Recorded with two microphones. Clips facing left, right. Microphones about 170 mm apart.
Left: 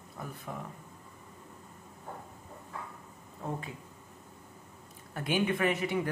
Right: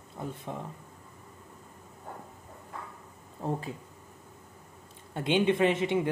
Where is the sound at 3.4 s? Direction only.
35° right (ahead or behind).